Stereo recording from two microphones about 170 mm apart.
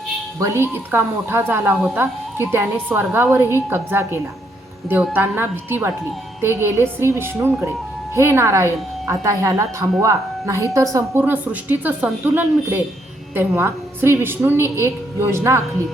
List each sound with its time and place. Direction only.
0.3 s a woman's voice: 15° right (ahead or behind)